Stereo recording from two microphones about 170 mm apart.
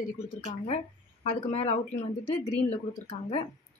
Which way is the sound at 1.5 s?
40° left (ahead or behind).